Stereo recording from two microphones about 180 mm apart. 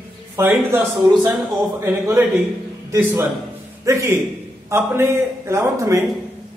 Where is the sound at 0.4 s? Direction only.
10° right (ahead or behind).